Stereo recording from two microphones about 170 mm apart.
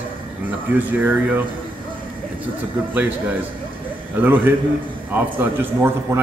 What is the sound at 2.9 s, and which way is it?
A man's voice, 10° right (ahead or behind).